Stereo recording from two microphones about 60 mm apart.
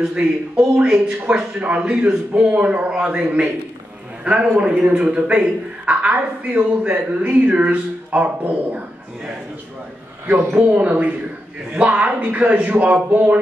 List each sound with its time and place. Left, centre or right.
0.0 s a man's voice: centre
10.2 s a man's voice: right